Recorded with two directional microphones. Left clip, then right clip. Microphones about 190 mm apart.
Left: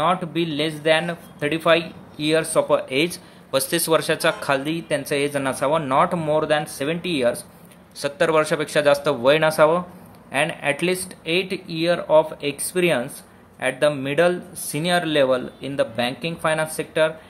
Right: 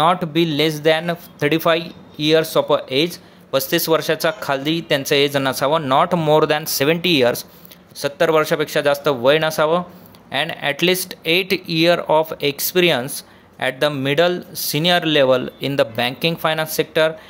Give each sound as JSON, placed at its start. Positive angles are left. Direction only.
{"t": 0.0, "sound": "speech", "side_deg": -25}
{"t": 8.0, "sound": "speech", "side_deg": -10}